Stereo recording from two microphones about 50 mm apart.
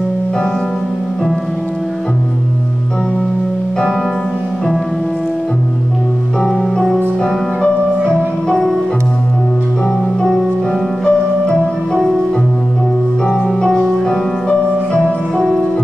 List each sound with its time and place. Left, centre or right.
7.2 s music: centre
11.1 s music: centre
13.3 s music: centre